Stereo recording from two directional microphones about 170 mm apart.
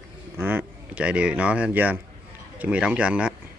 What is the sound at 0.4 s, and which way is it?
Speech, 10° right (ahead or behind).